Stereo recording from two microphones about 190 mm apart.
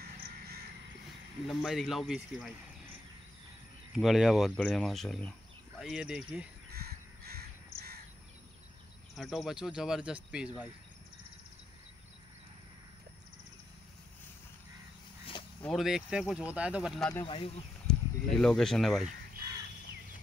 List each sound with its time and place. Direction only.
1.5 s speech: centre (ahead or behind)
3.9 s speech: centre (ahead or behind)
6.7 s crow: 55° right (ahead or behind)
9.1 s speech: centre (ahead or behind)
15.6 s speech: centre (ahead or behind)
17.1 s speech: 25° left (ahead or behind)
17.8 s speech: 5° left (ahead or behind)